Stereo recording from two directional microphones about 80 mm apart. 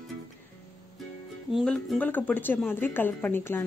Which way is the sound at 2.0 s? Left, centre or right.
Left.